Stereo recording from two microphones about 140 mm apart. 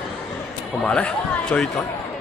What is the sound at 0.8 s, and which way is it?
Speech, 10° left (ahead or behind).